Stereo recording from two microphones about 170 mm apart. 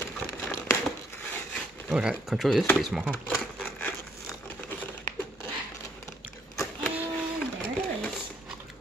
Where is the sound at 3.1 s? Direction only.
10° left (ahead or behind).